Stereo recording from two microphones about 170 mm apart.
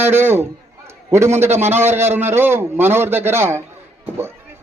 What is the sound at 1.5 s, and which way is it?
Speech, 40° right (ahead or behind).